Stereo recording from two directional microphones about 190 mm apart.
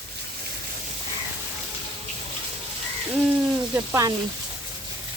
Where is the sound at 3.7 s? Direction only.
15° right (ahead or behind).